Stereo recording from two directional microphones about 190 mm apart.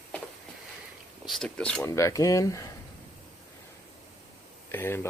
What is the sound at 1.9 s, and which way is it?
Speech, 15° left (ahead or behind).